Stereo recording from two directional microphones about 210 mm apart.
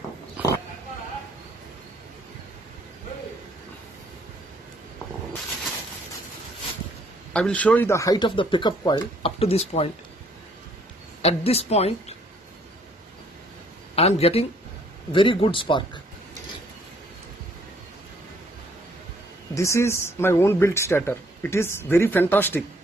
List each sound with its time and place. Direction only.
7.3 s speech: 5° left (ahead or behind); by 9.8 s 30° left (ahead or behind)
11.2 s speech: 30° left (ahead or behind)
13.9 s speech: 30° left (ahead or behind)
19.5 s speech: 15° left (ahead or behind)